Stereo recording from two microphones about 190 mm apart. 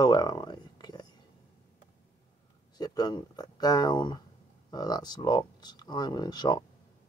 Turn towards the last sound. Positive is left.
turn(degrees=20)  # may be behind; listen again after turning